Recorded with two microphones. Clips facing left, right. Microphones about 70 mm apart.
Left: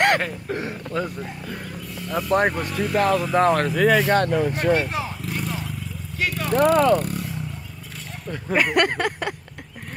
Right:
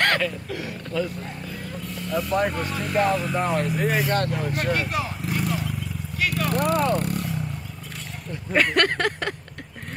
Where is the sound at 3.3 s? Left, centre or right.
Left.